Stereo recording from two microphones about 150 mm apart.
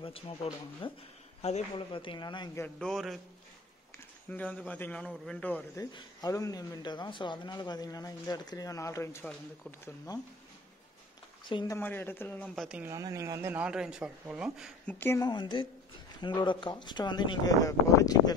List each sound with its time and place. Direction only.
0.0 s speech: 40° left (ahead or behind)
1.4 s a man's voice: 45° left (ahead or behind)
1.9 s speech: 35° left (ahead or behind)
2.6 s a man's voice: 5° left (ahead or behind)
4.3 s a man's voice: 10° left (ahead or behind)
5.8 s speech: 25° left (ahead or behind)
11.4 s speech: 30° left (ahead or behind)
11.7 s a man's voice: 15° left (ahead or behind)
12.5 s speech: 10° right (ahead or behind)
12.9 s speech: 20° right (ahead or behind)
14.9 s a man's voice: 10° left (ahead or behind)
15.1 s speech: 30° left (ahead or behind)